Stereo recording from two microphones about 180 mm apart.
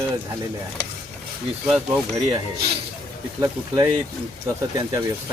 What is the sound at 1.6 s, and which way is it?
Speech, 10° right (ahead or behind).